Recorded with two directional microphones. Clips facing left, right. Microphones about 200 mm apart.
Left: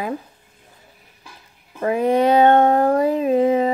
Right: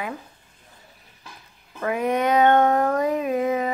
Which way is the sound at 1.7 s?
30° left (ahead or behind).